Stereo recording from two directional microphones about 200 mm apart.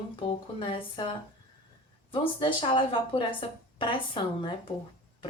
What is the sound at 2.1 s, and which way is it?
Speech, 25° left (ahead or behind).